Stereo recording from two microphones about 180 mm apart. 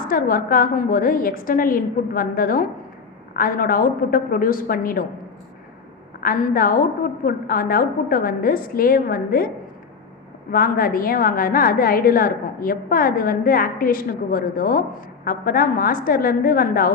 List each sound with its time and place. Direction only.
0.0 s a woman's voice: 50° left (ahead or behind)
6.1 s a woman's voice: 50° left (ahead or behind)
10.5 s a woman's voice: 55° left (ahead or behind)